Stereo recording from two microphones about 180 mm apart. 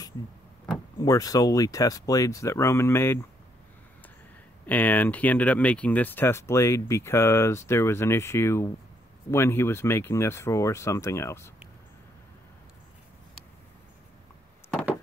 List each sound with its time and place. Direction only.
0.9 s speech: 20° left (ahead or behind)
4.6 s speech: 10° left (ahead or behind)